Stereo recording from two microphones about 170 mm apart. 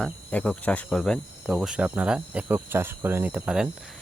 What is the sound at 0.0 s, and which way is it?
Speech, 10° left (ahead or behind).